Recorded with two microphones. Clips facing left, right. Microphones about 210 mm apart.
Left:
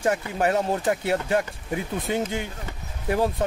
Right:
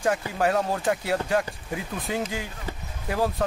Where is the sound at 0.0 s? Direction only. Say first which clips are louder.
Left 1 dB; 25° left (ahead or behind).